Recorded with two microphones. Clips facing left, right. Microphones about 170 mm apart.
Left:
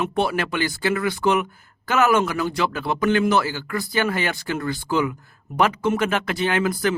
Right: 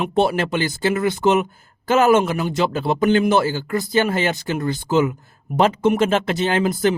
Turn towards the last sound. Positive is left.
turn(degrees=-25)  # may be behind; listen again after turning